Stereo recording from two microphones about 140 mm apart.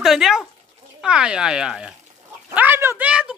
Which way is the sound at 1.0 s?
5° right (ahead or behind).